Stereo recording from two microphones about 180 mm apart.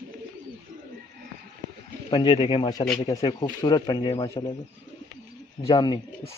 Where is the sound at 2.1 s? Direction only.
25° left (ahead or behind).